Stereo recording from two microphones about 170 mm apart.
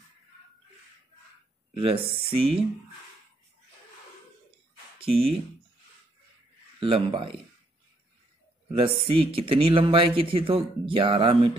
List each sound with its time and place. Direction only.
1.7 s speech: 35° right (ahead or behind)
4.9 s speech: 35° right (ahead or behind)
6.8 s speech: 30° right (ahead or behind)
8.7 s speech: 30° right (ahead or behind)